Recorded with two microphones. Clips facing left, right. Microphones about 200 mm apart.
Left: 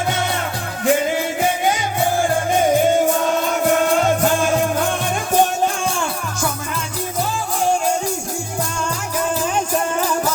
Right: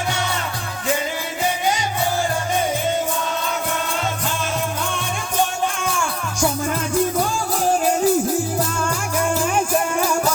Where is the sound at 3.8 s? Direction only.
50° left (ahead or behind).